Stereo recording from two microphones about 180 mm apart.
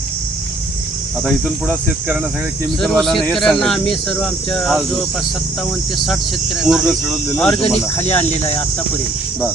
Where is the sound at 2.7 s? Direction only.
Centre (ahead or behind).